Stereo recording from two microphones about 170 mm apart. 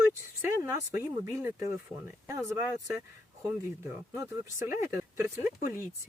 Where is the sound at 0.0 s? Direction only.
15° right (ahead or behind).